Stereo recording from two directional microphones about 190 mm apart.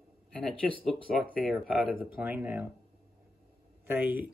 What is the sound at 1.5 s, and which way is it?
Speech, 10° right (ahead or behind).